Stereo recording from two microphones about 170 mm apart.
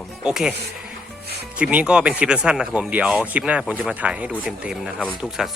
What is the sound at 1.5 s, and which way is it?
Speech, 5° right (ahead or behind).